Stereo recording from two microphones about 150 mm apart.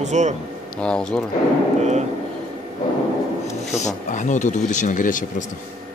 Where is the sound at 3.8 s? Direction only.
55° left (ahead or behind).